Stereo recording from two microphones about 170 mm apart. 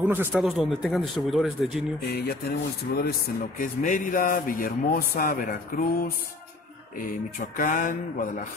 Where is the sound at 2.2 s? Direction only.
70° left (ahead or behind).